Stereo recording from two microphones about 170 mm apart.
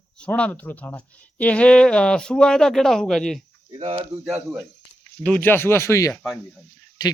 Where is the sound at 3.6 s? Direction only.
35° right (ahead or behind).